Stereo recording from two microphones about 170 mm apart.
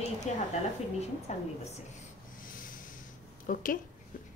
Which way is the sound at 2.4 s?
55° left (ahead or behind).